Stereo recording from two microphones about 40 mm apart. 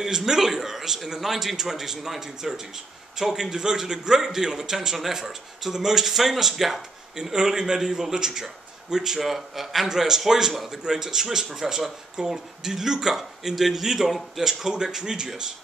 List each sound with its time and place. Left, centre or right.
0.0 s a man's voice: centre
7.3 s a man's voice: centre